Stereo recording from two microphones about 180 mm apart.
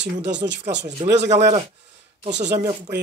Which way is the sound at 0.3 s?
75° right (ahead or behind).